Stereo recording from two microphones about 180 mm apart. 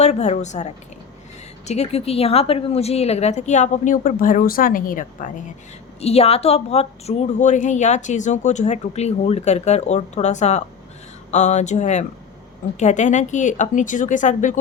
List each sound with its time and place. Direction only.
0.0 s a woman's voice: 40° left (ahead or behind)
6.0 s a woman's voice: 35° left (ahead or behind)